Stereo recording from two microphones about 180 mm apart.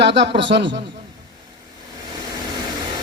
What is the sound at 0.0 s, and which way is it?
Speech, 75° right (ahead or behind).